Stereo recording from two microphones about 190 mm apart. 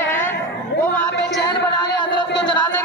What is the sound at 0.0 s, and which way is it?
Chatter, 10° left (ahead or behind).